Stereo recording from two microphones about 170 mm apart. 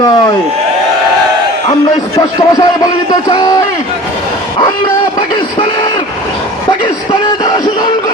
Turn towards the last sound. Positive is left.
turn(degrees=25)  # may be behind; listen again after turning